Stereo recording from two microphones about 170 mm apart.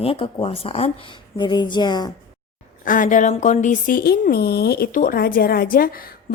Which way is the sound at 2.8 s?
50° left (ahead or behind).